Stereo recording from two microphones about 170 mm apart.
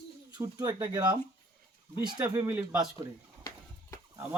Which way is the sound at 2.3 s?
15° right (ahead or behind).